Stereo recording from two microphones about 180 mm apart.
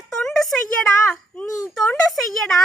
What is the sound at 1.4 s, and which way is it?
Speech, 20° left (ahead or behind).